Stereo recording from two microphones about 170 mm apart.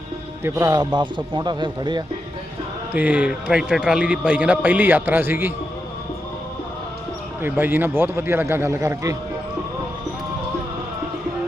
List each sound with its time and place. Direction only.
0.4 s speech: 20° right (ahead or behind)
2.9 s a man's voice: 10° right (ahead or behind)
7.4 s a man's voice: 10° right (ahead or behind)